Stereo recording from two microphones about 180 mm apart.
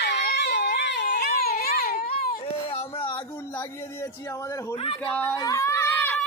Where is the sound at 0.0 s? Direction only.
70° left (ahead or behind).